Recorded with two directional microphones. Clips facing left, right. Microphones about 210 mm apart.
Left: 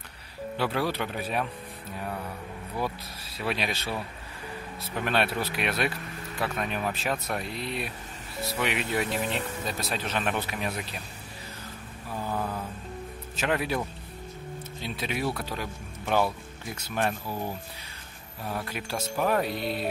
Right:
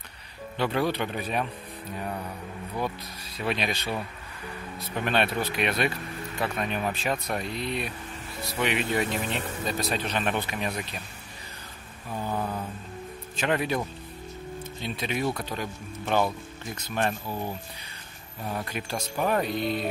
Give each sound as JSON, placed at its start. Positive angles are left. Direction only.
{"t": 0.6, "sound": "speech", "side_deg": 5}
{"t": 3.3, "sound": "speech", "side_deg": 5}
{"t": 4.9, "sound": "speech", "side_deg": 5}
{"t": 12.3, "sound": "mantra", "side_deg": -5}
{"t": 13.4, "sound": "speech", "side_deg": 5}
{"t": 18.4, "sound": "speech", "side_deg": 0}